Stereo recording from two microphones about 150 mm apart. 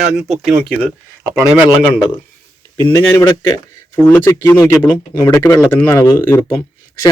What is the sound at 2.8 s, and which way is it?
Speech, 25° left (ahead or behind).